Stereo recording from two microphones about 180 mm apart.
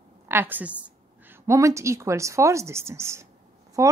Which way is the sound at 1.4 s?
15° right (ahead or behind).